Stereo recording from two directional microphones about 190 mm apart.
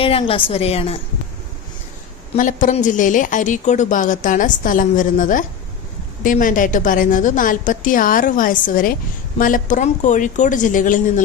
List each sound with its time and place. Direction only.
0.0 s a woman's voice: 30° left (ahead or behind)
2.3 s a woman's voice: 40° left (ahead or behind)